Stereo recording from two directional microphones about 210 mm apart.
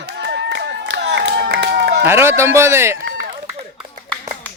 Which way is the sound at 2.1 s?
10° right (ahead or behind).